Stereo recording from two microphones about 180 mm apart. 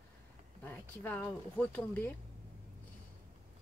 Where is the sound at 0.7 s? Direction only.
10° left (ahead or behind).